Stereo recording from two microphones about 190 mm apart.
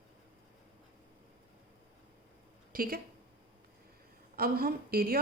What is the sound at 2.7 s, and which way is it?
Speech, 50° right (ahead or behind).